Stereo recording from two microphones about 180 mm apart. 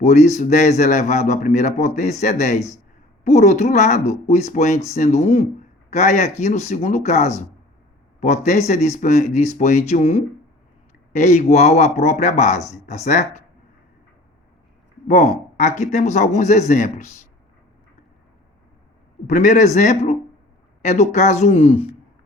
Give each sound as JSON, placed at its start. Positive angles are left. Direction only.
{"t": 0.0, "sound": "a man's voice", "side_deg": 40}
{"t": 15.0, "sound": "a man's voice", "side_deg": 40}
{"t": 19.3, "sound": "a man's voice", "side_deg": 45}